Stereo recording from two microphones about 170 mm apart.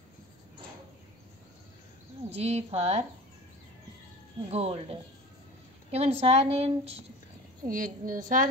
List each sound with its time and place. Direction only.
2.2 s a woman's voice: 40° right (ahead or behind)
4.5 s a woman's voice: 35° right (ahead or behind)
7.6 s a woman's voice: 50° right (ahead or behind)